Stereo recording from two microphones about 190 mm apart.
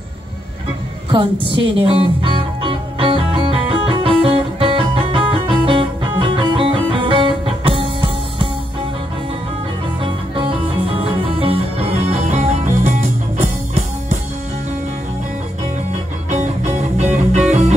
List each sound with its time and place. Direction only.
1.1 s music: 25° right (ahead or behind)
11.0 s music: 30° right (ahead or behind)
16.3 s music: 40° right (ahead or behind)